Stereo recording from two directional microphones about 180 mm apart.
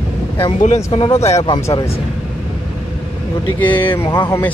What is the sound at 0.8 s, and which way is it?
Speech, 20° left (ahead or behind).